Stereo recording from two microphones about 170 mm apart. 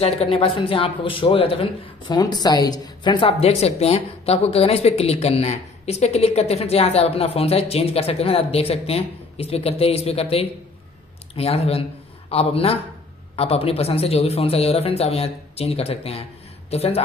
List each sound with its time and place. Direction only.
0.0 s speech: 35° left (ahead or behind)